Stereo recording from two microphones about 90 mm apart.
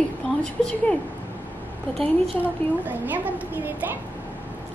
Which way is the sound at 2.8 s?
20° right (ahead or behind).